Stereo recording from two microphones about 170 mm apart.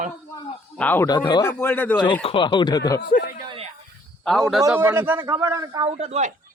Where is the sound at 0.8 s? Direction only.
10° left (ahead or behind).